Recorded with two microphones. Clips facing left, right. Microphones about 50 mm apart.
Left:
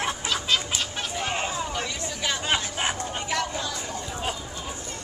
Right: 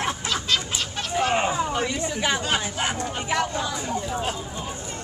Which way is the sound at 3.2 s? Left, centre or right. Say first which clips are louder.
Right 4 dB; centre.